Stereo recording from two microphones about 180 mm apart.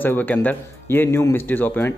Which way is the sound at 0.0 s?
10° left (ahead or behind).